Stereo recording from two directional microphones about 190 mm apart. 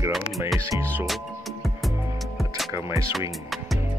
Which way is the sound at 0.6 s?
15° right (ahead or behind).